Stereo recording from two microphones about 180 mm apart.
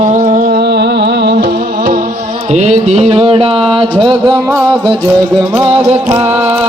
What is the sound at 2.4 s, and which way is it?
Music, 40° right (ahead or behind).